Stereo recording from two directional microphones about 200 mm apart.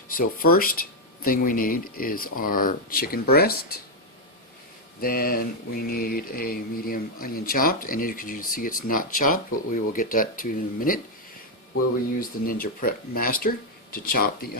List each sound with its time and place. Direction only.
0.1 s speech: 45° left (ahead or behind)
4.9 s speech: 50° left (ahead or behind)
12.2 s speech: 45° left (ahead or behind)